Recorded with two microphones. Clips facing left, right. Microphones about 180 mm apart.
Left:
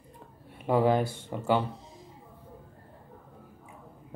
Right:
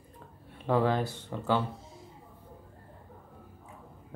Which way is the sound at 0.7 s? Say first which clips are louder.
Left 3 dB; 15° left (ahead or behind).